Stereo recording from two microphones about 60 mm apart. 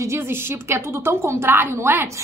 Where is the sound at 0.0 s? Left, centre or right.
Right.